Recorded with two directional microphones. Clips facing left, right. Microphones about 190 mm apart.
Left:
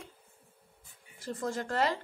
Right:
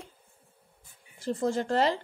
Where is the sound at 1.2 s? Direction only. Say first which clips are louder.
Right 7 dB; 30° right (ahead or behind).